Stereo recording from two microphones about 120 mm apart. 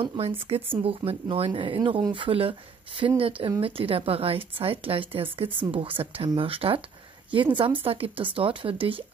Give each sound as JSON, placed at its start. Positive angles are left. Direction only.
{"t": 0.0, "sound": "speech", "side_deg": -50}